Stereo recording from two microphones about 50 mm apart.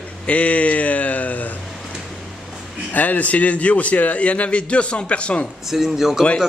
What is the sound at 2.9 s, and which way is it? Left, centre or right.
A man's voice, left.